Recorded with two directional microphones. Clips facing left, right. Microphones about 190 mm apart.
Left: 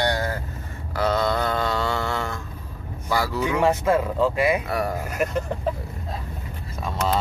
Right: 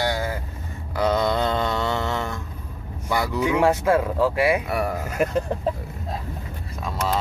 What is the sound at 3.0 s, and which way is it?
Speech, 20° right (ahead or behind).